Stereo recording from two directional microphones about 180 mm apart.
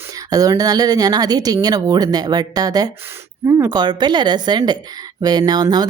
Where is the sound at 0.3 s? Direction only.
20° right (ahead or behind).